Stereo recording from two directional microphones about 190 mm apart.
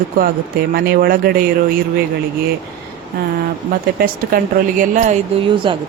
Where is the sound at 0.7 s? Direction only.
55° right (ahead or behind).